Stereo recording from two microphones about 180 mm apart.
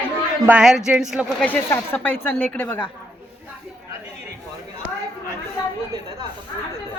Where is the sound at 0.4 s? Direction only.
5° right (ahead or behind).